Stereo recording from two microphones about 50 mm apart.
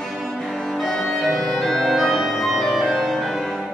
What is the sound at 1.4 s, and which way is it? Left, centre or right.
Organ, centre.